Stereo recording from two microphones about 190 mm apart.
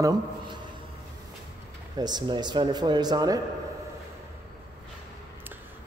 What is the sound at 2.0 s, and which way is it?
Speech, 20° right (ahead or behind).